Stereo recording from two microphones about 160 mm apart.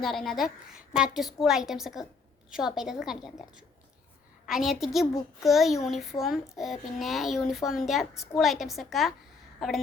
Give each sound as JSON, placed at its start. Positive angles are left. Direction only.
{"t": 0.0, "sound": "a woman's voice", "side_deg": 0}